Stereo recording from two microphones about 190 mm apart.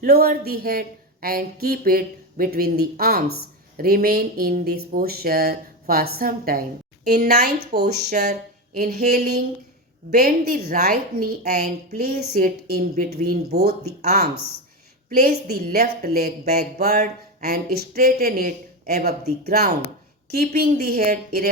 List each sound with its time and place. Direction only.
0.0 s speech: 55° right (ahead or behind)
12.0 s speech: 55° right (ahead or behind)